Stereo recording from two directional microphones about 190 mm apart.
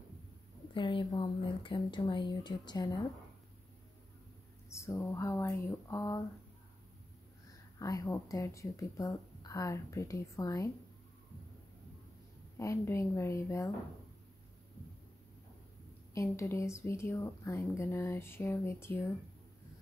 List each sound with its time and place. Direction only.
0.7 s speech: 25° left (ahead or behind)
4.6 s a woman's voice: 15° left (ahead or behind)
7.8 s a woman's voice: 15° left (ahead or behind)
12.5 s a woman's voice: 15° left (ahead or behind)
16.2 s a woman's voice: 15° left (ahead or behind)